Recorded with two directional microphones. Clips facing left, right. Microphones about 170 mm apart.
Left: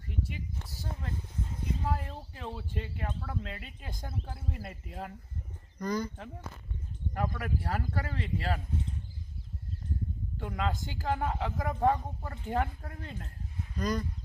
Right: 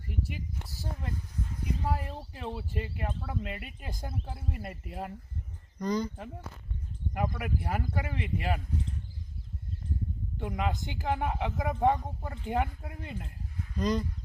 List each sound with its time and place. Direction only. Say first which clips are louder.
0.1 s speech: right 1 dB; 5° right (ahead or behind)
5.8 s speech: right 2 dB; 20° right (ahead or behind)
7.1 s speech: right 1 dB; 15° right (ahead or behind)
10.3 s speech: right 2 dB; 15° right (ahead or behind)
13.7 s speech: right 3 dB; 20° right (ahead or behind)